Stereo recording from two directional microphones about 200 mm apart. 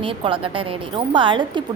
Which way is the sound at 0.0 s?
25° right (ahead or behind).